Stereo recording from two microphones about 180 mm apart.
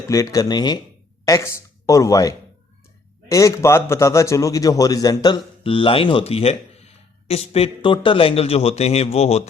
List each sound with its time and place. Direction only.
0.1 s a man's voice: 20° left (ahead or behind); by 9.4 s 35° left (ahead or behind)